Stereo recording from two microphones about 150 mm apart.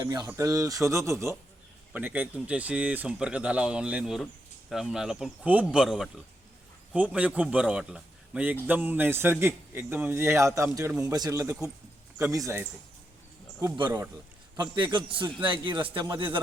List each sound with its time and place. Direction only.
0.0 s a man's voice: 25° right (ahead or behind)
14.5 s a man's voice: 30° right (ahead or behind)